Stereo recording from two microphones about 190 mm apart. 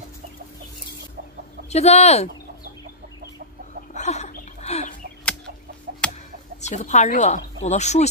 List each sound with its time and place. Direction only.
1.7 s speech: 35° left (ahead or behind)
3.9 s a sound: 35° left (ahead or behind)
5.9 s chicken: 55° right (ahead or behind)
6.6 s speech: 40° left (ahead or behind)